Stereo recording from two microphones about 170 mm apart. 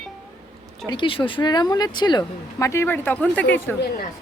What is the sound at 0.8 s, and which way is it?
Speech, 30° left (ahead or behind).